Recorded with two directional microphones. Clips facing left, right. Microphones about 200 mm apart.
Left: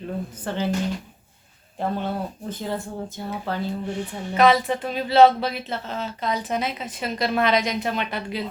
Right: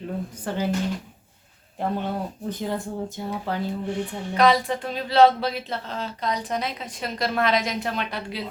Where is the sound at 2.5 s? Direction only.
15° right (ahead or behind).